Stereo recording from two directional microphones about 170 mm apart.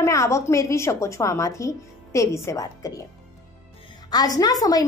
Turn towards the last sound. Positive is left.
turn(degrees=20)  # may be behind; listen again after turning